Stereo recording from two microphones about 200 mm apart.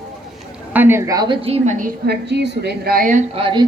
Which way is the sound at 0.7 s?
10° right (ahead or behind).